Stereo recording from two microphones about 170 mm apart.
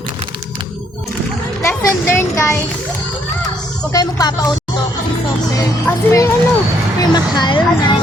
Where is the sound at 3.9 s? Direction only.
20° left (ahead or behind).